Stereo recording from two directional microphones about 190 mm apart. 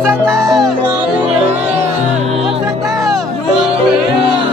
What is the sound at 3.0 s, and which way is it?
Music, centre (ahead or behind).